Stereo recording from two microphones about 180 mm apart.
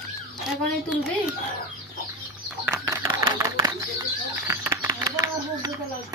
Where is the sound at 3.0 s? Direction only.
20° right (ahead or behind).